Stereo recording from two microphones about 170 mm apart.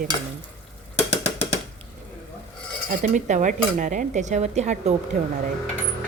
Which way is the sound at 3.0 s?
45° right (ahead or behind).